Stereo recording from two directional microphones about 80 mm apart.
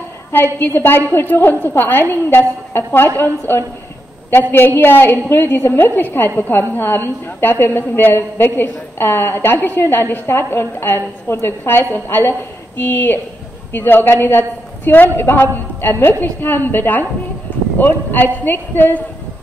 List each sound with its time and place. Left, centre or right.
0.3 s a woman's voice: left